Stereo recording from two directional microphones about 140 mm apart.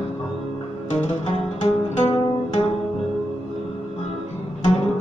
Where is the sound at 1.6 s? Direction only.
50° left (ahead or behind).